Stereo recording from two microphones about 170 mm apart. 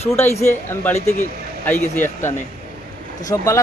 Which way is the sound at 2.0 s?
15° left (ahead or behind).